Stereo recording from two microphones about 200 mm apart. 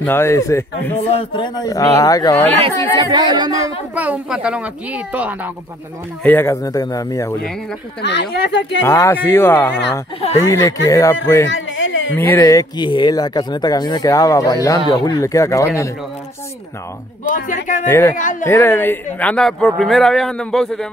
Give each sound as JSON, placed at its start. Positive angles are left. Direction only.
{"t": 0.0, "sound": "speech", "side_deg": 10}
{"t": 1.1, "sound": "speech", "side_deg": 25}
{"t": 3.0, "sound": "speech", "side_deg": -20}
{"t": 3.9, "sound": "speech", "side_deg": -5}
{"t": 6.2, "sound": "speech", "side_deg": 10}
{"t": 8.0, "sound": "speech", "side_deg": 60}
{"t": 8.8, "sound": "speech", "side_deg": 15}
{"t": 11.4, "sound": "a sound", "side_deg": 70}
{"t": 12.2, "sound": "speech", "side_deg": 15}
{"t": 17.2, "sound": "speech", "side_deg": 40}
{"t": 17.8, "sound": "speech", "side_deg": 15}
{"t": 18.1, "sound": "speech", "side_deg": 40}
{"t": 18.5, "sound": "a man's voice", "side_deg": 10}